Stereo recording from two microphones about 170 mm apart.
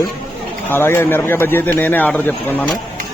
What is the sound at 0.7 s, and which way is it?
Speech, 15° left (ahead or behind).